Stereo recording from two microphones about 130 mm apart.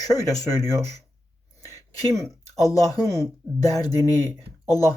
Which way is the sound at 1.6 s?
25° left (ahead or behind).